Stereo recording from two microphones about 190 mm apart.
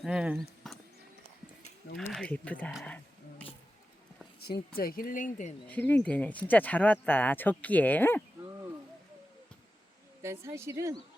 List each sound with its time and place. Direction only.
0.0 s speech: 5° right (ahead or behind)
0.7 s a sound: centre (ahead or behind)
2.0 s speech: centre (ahead or behind)
2.8 s a sound: 5° left (ahead or behind)
4.8 s speech: 50° left (ahead or behind)
5.6 s speech: 10° left (ahead or behind)
10.2 s speech: 15° right (ahead or behind)